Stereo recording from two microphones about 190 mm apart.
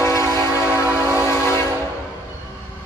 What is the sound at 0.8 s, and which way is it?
Train, 10° right (ahead or behind).